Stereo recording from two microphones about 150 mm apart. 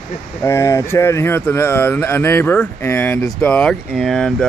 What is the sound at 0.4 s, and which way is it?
Speech, 15° left (ahead or behind).